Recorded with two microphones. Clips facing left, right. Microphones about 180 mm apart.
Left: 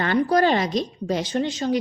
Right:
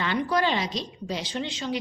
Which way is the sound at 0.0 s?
45° left (ahead or behind).